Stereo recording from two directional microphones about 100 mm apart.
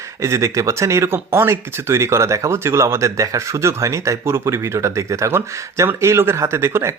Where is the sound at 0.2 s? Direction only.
30° right (ahead or behind).